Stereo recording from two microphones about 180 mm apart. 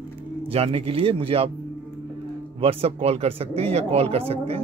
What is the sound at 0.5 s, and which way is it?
Speech, 30° right (ahead or behind).